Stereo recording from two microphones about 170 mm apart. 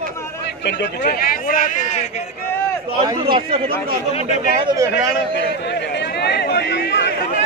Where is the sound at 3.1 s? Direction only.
30° right (ahead or behind).